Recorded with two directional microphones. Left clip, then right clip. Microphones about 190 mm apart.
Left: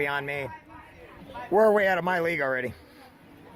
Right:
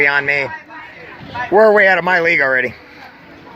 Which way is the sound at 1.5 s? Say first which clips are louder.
Right 11 dB; 5° left (ahead or behind).